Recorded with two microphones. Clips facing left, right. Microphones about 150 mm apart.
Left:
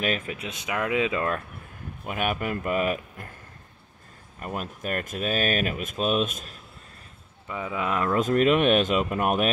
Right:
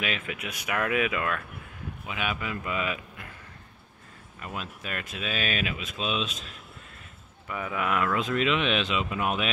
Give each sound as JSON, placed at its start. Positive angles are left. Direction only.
{"t": 0.0, "sound": "speech", "side_deg": 40}
{"t": 0.5, "sound": "speech", "side_deg": 20}
{"t": 2.0, "sound": "speech", "side_deg": 50}
{"t": 4.4, "sound": "speech", "side_deg": 45}
{"t": 7.4, "sound": "speech", "side_deg": 25}